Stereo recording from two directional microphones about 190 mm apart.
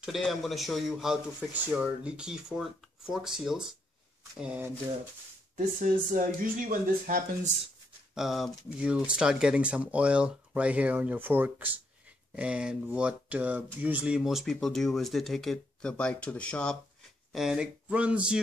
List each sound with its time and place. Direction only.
0.0 s speech: centre (ahead or behind)
5.8 s speech: 45° right (ahead or behind)
8.1 s speech: centre (ahead or behind)